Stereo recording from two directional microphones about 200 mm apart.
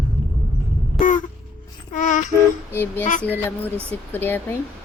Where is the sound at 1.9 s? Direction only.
40° left (ahead or behind).